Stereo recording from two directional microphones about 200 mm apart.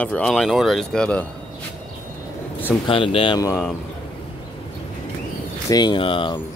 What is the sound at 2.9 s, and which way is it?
Speech, 25° left (ahead or behind).